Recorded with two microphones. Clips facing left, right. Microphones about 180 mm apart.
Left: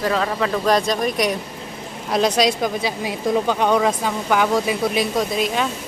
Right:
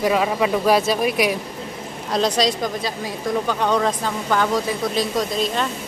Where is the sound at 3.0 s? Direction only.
15° left (ahead or behind).